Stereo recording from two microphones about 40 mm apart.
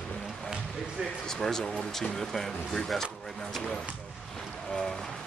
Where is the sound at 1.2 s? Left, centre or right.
Centre.